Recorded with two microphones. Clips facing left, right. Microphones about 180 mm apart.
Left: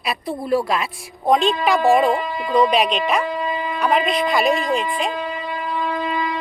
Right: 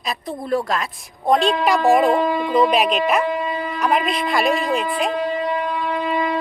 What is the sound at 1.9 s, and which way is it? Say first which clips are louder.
A woman's voice: right 2 dB; centre (ahead or behind).